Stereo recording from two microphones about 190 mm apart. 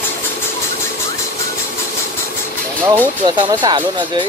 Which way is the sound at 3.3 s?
25° right (ahead or behind).